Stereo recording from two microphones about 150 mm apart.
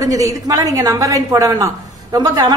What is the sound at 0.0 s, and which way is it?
A woman's voice, 25° right (ahead or behind).